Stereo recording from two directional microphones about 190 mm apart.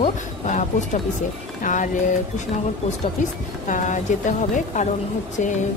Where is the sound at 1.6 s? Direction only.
40° left (ahead or behind).